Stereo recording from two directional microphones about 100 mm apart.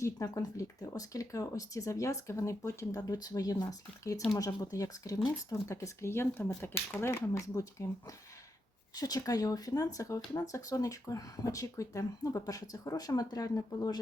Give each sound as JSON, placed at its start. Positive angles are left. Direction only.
{"t": 0.0, "sound": "speech", "side_deg": 30}
{"t": 7.1, "sound": "speech", "side_deg": 35}